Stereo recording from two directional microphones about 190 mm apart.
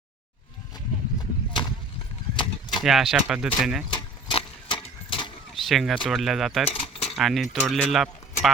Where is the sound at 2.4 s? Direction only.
25° left (ahead or behind).